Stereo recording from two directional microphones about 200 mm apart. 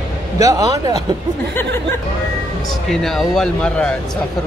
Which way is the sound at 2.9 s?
Centre (ahead or behind).